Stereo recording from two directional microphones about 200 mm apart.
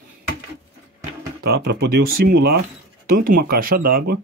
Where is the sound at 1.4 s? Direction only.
50° right (ahead or behind).